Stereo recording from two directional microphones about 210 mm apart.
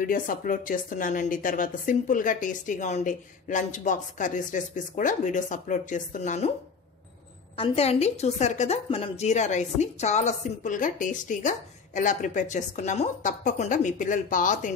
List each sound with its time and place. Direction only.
0.0 s a woman's voice: 40° left (ahead or behind)
7.5 s a woman's voice: 25° left (ahead or behind)